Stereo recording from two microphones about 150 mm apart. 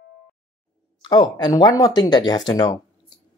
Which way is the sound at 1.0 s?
30° left (ahead or behind).